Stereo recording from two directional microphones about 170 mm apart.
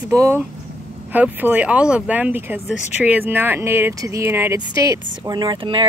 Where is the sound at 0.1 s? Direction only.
15° right (ahead or behind).